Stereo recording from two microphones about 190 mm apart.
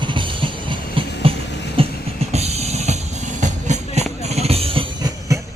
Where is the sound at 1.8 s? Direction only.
30° right (ahead or behind).